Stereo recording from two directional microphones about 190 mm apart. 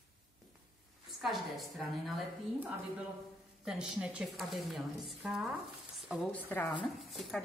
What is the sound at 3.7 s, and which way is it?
A woman's voice, 5° right (ahead or behind).